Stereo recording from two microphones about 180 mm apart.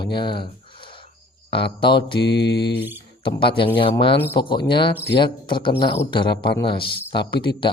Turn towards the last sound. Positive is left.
turn(degrees=25)  # may be behind; listen again after turning